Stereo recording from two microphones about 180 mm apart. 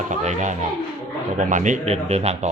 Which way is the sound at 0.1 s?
40° right (ahead or behind).